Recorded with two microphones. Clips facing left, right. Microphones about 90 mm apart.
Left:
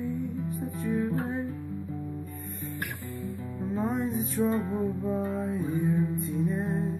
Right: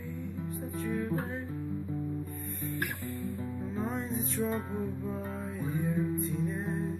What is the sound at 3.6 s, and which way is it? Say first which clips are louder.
Music: left 7 dB; 15° left (ahead or behind).